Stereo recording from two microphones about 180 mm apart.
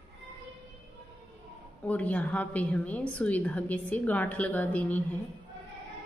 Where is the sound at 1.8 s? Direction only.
10° left (ahead or behind).